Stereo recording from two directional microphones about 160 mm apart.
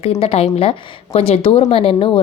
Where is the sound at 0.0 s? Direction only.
40° left (ahead or behind).